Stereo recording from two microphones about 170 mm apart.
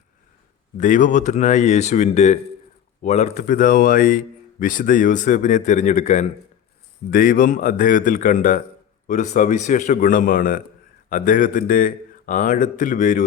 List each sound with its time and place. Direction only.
0.8 s speech: 45° left (ahead or behind)
7.1 s speech: 55° left (ahead or behind)